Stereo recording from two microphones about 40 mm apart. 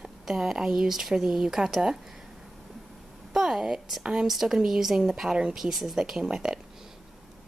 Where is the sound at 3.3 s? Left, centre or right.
Centre.